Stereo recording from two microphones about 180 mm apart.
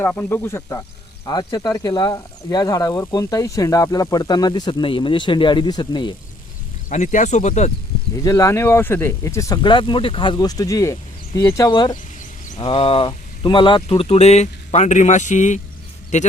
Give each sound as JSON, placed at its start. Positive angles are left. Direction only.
{"t": 0.0, "sound": "speech", "side_deg": 10}
{"t": 6.9, "sound": "speech", "side_deg": 40}
{"t": 8.1, "sound": "speech", "side_deg": 20}